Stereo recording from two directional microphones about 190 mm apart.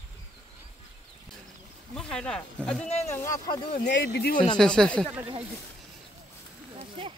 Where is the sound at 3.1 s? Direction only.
15° left (ahead or behind).